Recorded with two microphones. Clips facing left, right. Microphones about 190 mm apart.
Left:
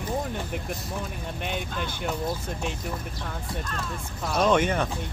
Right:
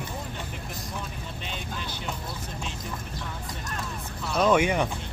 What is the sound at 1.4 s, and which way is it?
Speech, 55° left (ahead or behind).